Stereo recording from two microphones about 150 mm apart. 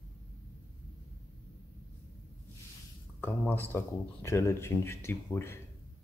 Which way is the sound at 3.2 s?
15° left (ahead or behind).